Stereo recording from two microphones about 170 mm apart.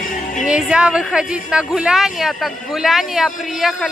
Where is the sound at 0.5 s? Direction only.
5° right (ahead or behind).